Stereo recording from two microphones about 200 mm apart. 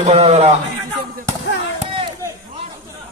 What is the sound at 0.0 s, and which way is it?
Speech, 30° right (ahead or behind).